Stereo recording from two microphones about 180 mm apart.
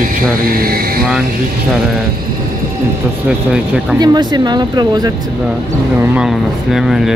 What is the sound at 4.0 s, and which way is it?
Speech, 25° right (ahead or behind).